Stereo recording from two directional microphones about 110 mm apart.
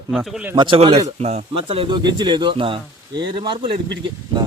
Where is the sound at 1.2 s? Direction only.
80° right; by 3.7 s 50° right (ahead or behind).